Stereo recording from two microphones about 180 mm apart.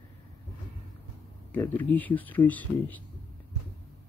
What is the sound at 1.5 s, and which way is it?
Speech, 10° left (ahead or behind).